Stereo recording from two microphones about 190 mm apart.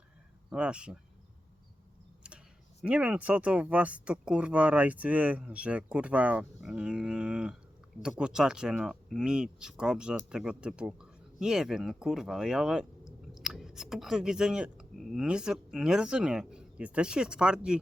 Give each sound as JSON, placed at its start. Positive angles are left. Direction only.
{"t": 0.5, "sound": "speech", "side_deg": -5}
{"t": 2.8, "sound": "speech", "side_deg": -5}